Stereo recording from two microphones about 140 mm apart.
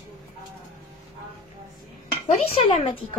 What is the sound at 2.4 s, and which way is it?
Speech, 45° left (ahead or behind).